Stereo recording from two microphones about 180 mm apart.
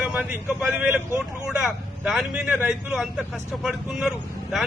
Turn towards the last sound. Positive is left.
turn(degrees=0)  # may be behind; listen again after turning